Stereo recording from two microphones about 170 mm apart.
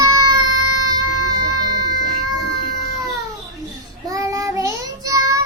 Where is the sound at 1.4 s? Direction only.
25° right (ahead or behind).